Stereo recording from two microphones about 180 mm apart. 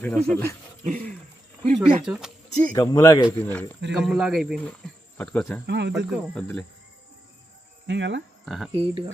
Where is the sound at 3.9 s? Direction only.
5° right (ahead or behind).